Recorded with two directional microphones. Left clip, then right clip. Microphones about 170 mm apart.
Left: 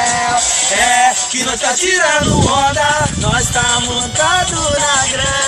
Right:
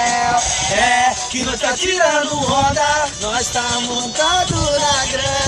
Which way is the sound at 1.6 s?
30° left (ahead or behind).